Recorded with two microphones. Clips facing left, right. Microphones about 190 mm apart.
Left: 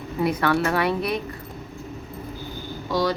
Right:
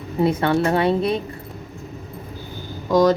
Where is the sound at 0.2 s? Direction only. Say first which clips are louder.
Right 3 dB; 25° right (ahead or behind).